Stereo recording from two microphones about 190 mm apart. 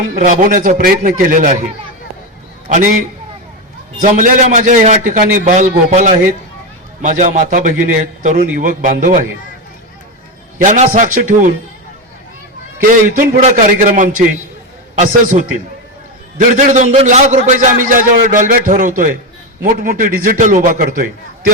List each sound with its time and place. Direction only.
0.1 s a man's voice: 45° right (ahead or behind)
2.6 s a man's voice: 40° right (ahead or behind)
4.0 s a man's voice: 40° right (ahead or behind)
10.6 s a man's voice: 40° right (ahead or behind)
12.9 s a man's voice: 45° right (ahead or behind)